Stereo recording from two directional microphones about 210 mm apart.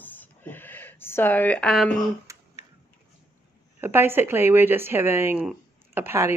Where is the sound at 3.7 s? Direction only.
10° right (ahead or behind).